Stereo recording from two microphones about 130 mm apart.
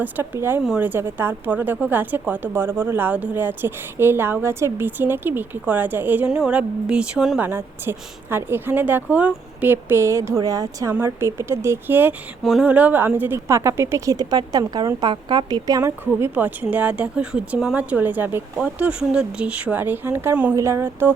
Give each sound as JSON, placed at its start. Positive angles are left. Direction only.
{"t": 0.0, "sound": "speech", "side_deg": -15}
{"t": 7.4, "sound": "speech", "side_deg": -15}
{"t": 12.4, "sound": "speech", "side_deg": 0}
{"t": 12.6, "sound": "speech", "side_deg": -10}